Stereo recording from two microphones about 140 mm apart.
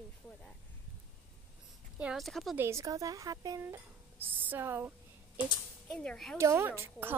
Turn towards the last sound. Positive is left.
turn(degrees=-15)  # may be behind; listen again after turning